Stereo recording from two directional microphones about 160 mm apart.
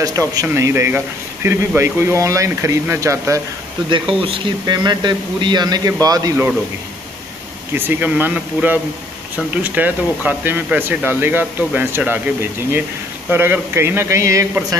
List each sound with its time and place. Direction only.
0.0 s speech: 20° right (ahead or behind)
4.1 s speech: 35° right (ahead or behind)
7.7 s speech: 15° right (ahead or behind)